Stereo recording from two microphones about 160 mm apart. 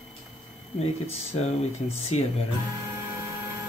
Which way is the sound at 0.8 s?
40° left (ahead or behind).